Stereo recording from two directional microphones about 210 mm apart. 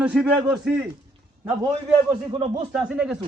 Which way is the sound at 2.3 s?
25° right (ahead or behind).